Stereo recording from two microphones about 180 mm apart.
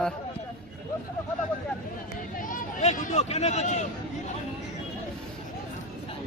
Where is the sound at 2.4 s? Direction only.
45° left (ahead or behind).